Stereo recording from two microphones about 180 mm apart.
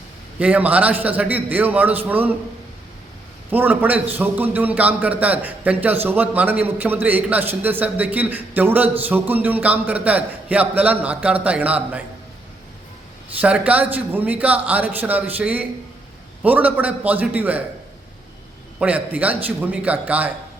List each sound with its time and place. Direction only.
0.3 s a man's voice: 10° right (ahead or behind)
3.5 s a man's voice: 10° right (ahead or behind)
13.4 s a man's voice: 10° right (ahead or behind)
18.8 s a man's voice: 10° right (ahead or behind)